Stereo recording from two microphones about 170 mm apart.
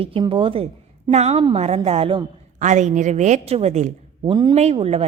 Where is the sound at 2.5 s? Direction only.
45° right (ahead or behind).